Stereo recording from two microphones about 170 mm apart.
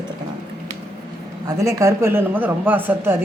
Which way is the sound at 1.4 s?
20° right (ahead or behind).